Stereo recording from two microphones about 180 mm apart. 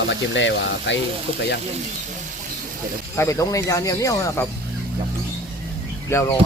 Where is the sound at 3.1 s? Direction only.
15° left (ahead or behind).